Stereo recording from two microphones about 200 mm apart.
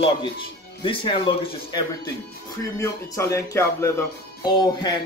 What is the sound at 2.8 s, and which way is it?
Speech, 15° left (ahead or behind).